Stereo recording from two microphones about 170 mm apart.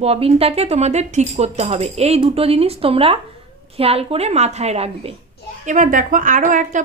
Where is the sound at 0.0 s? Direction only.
35° right (ahead or behind).